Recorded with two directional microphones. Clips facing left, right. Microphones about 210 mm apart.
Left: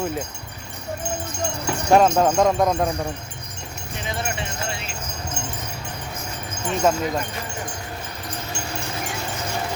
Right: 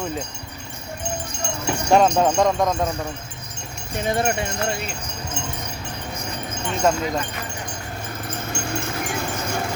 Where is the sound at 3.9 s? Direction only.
55° right (ahead or behind).